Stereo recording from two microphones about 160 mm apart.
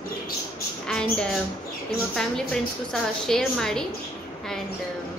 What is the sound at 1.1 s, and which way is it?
A woman's voice, 5° left (ahead or behind).